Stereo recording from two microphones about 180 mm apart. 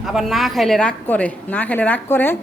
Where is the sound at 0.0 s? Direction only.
Centre (ahead or behind).